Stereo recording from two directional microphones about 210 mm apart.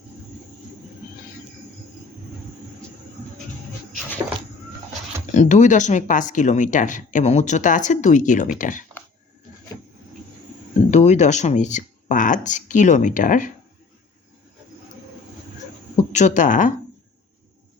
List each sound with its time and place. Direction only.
5.2 s speech: 35° left (ahead or behind)
10.9 s speech: 35° left (ahead or behind)
16.0 s speech: 35° left (ahead or behind)